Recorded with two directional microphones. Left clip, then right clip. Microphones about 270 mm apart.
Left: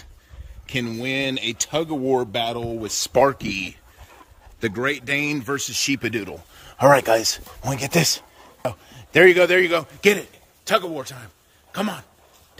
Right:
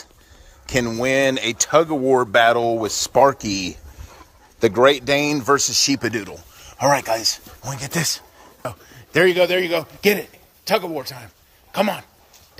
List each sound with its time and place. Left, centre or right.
0.7 s speech: centre
5.9 s speech: centre
8.6 s a man's voice: centre